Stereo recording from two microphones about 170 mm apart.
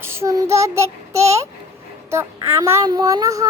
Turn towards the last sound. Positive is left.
turn(degrees=-20)  # may be behind; listen again after turning